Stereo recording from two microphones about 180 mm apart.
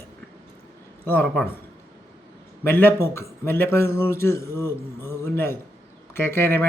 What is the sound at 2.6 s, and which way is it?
A man's voice, 10° left (ahead or behind).